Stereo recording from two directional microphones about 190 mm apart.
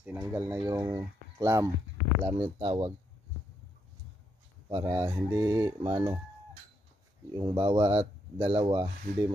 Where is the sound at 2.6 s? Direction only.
30° right (ahead or behind).